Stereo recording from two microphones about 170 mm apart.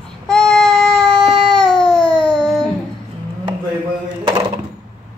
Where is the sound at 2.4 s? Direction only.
Centre (ahead or behind).